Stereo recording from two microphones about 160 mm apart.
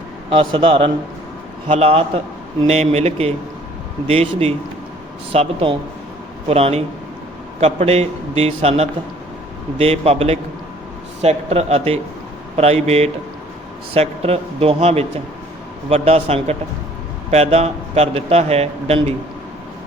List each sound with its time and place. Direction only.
0.3 s a man's voice: 35° right (ahead or behind)